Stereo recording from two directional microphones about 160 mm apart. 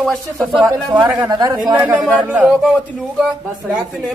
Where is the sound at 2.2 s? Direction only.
10° right (ahead or behind).